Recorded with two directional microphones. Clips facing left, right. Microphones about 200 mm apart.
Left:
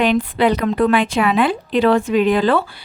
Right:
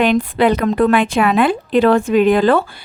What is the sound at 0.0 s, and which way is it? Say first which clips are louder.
A woman's voice: right 2 dB; 50° right (ahead or behind).